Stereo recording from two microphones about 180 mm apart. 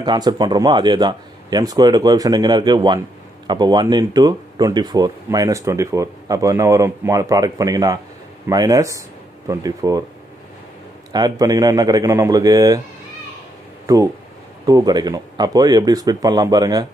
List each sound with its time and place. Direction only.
0.0 s speech: 25° right (ahead or behind)
11.1 s speech: 20° right (ahead or behind)
14.7 s speech: 20° right (ahead or behind)